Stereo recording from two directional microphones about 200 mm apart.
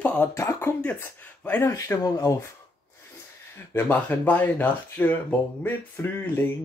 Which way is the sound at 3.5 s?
10° left (ahead or behind).